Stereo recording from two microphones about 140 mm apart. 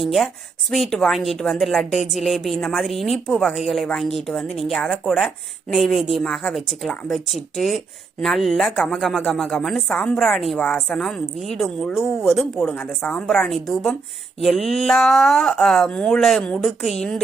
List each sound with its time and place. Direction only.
0.0 s a woman's voice: centre (ahead or behind)